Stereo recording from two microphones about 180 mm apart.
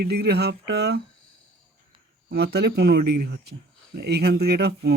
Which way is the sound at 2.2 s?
65° right (ahead or behind).